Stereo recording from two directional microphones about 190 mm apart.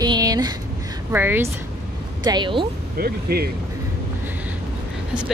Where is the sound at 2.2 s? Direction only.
25° right (ahead or behind).